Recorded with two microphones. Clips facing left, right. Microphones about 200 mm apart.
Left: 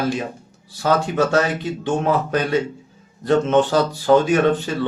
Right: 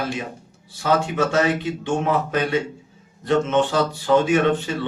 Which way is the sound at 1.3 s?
40° left (ahead or behind).